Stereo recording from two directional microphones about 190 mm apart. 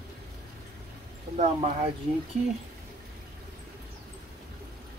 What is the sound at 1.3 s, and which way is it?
Speech, 35° right (ahead or behind).